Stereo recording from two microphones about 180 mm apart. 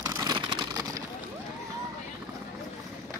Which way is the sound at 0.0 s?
20° right (ahead or behind).